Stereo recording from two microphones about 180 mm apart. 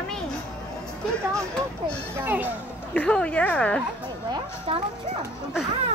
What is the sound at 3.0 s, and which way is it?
Speech, 5° left (ahead or behind).